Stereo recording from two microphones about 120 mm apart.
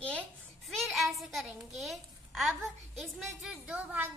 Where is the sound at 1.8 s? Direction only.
Centre (ahead or behind).